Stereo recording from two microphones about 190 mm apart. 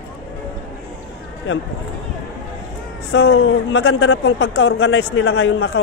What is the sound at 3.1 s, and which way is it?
Speech, 90° left.